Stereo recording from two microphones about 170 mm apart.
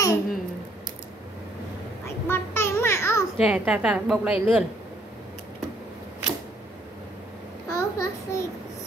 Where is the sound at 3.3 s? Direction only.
5° right (ahead or behind).